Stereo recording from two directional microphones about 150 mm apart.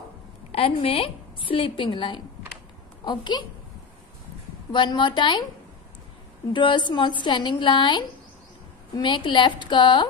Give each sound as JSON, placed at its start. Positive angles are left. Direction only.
{"t": 0.5, "sound": "a woman's voice", "side_deg": 40}
{"t": 4.7, "sound": "a woman's voice", "side_deg": 30}
{"t": 6.5, "sound": "a woman's voice", "side_deg": 30}